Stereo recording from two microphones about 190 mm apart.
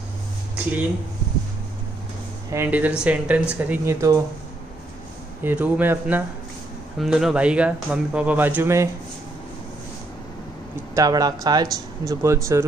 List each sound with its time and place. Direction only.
2.5 s speech: 10° right (ahead or behind)
5.4 s speech: 10° right (ahead or behind)
11.0 s speech: 20° right (ahead or behind)